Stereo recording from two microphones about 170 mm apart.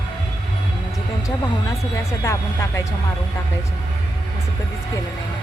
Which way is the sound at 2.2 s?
20° left (ahead or behind).